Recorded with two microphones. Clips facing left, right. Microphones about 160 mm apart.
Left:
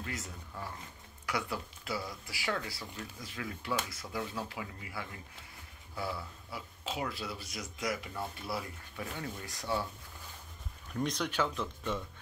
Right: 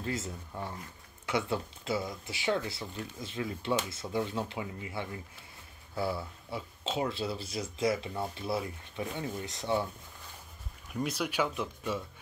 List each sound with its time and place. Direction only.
0.0 s speech: 25° right (ahead or behind)
10.9 s speech: 5° right (ahead or behind)